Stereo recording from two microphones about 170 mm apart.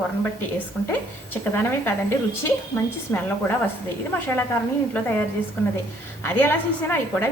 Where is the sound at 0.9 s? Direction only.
15° left (ahead or behind).